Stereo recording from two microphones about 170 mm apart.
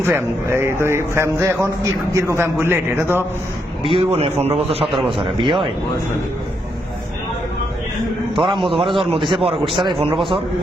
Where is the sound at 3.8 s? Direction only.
35° right (ahead or behind).